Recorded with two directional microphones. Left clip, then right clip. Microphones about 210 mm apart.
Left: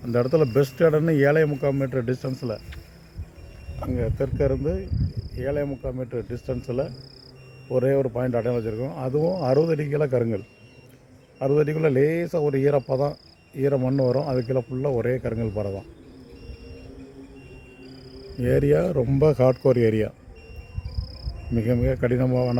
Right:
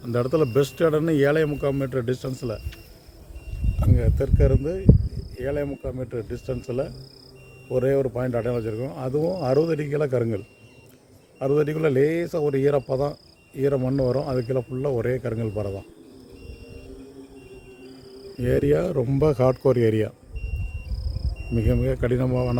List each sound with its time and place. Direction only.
0.1 s speech: 10° left (ahead or behind)
3.8 s speech: 15° left (ahead or behind)
18.3 s speech: 10° left (ahead or behind)
21.5 s speech: 5° left (ahead or behind)